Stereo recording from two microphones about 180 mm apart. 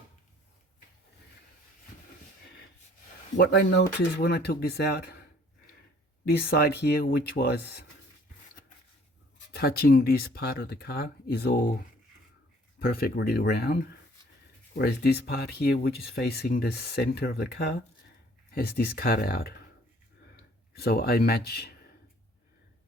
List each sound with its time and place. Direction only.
3.3 s speech: 75° left (ahead or behind)
3.8 s speech: 60° left (ahead or behind)
6.2 s speech: 60° left (ahead or behind)
9.5 s speech: 60° left (ahead or behind)
12.8 s speech: 60° left (ahead or behind)
14.8 s speech: 60° left (ahead or behind)
20.7 s speech: 60° left (ahead or behind)